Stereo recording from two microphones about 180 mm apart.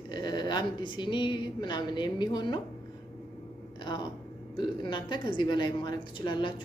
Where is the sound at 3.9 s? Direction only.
25° left (ahead or behind).